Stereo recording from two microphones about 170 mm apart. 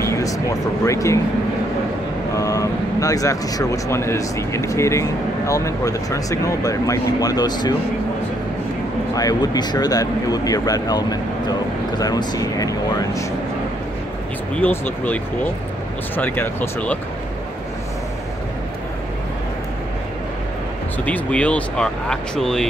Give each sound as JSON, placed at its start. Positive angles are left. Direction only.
{"t": 0.0, "sound": "speech", "side_deg": 20}
{"t": 2.3, "sound": "speech", "side_deg": 20}
{"t": 9.1, "sound": "speech", "side_deg": 20}
{"t": 14.5, "sound": "speech", "side_deg": 10}
{"t": 16.2, "sound": "speech", "side_deg": 10}
{"t": 21.0, "sound": "speech", "side_deg": 10}